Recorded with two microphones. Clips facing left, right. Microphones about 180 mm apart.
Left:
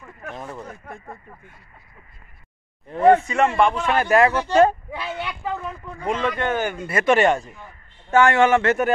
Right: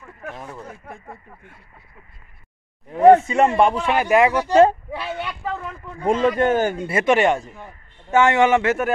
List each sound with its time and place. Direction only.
0.2 s a sound: 5° right (ahead or behind)
0.7 s speech: 10° right (ahead or behind)
2.9 s speech: 15° right (ahead or behind)
3.3 s speech: 35° right (ahead or behind)
3.8 s speech: 15° right (ahead or behind)
4.9 s speech: 5° right (ahead or behind)
6.0 s speech: 40° right (ahead or behind); by 7.2 s 25° right (ahead or behind)
7.2 s speech: 15° right (ahead or behind)